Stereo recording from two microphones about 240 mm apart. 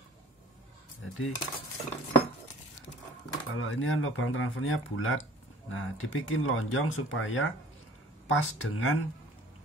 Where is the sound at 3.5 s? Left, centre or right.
Left.